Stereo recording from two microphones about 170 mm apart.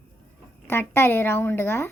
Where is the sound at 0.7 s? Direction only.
15° left (ahead or behind).